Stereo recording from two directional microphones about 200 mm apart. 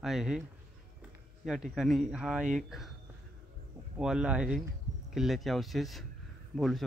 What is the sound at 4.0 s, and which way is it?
Speech, 5° right (ahead or behind).